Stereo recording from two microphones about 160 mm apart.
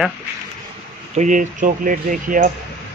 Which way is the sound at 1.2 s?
55° right (ahead or behind).